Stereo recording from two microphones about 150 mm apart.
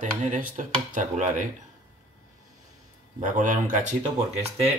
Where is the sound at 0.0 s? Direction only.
55° right (ahead or behind).